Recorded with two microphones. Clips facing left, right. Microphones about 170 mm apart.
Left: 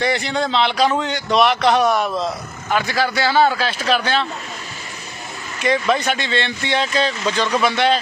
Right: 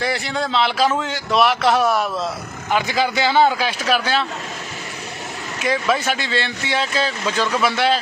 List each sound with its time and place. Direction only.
0.0 s speech: centre (ahead or behind)
2.6 s speech: 15° right (ahead or behind)
5.6 s speech: 5° right (ahead or behind)